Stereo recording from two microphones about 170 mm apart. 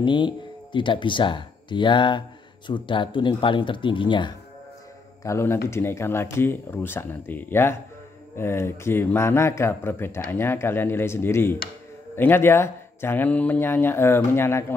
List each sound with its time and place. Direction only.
0.0 s speech: 30° left (ahead or behind)
5.2 s a man's voice: 15° left (ahead or behind)